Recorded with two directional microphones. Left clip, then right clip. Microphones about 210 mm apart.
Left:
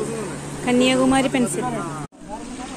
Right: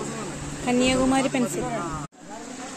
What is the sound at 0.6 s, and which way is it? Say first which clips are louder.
Speech: left 4 dB; 5° right (ahead or behind).